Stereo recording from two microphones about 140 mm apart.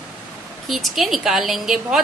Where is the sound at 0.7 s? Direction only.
Centre (ahead or behind).